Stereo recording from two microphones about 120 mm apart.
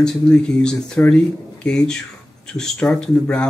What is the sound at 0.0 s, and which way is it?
Speech, 5° left (ahead or behind).